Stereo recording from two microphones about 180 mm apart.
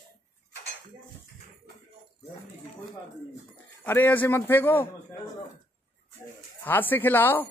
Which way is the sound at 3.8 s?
10° left (ahead or behind).